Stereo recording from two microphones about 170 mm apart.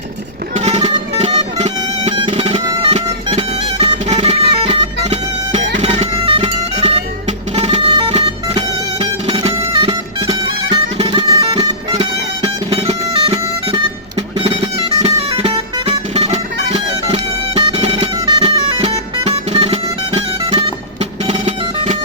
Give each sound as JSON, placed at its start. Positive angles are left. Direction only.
{"t": 0.5, "sound": "music", "side_deg": -40}
{"t": 16.7, "sound": "music", "side_deg": -25}
{"t": 19.2, "sound": "music", "side_deg": -40}